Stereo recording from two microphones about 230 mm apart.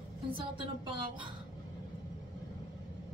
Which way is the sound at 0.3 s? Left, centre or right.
Right.